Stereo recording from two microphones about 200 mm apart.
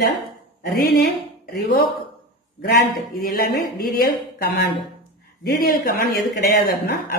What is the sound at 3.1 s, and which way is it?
A woman's voice, 50° left (ahead or behind).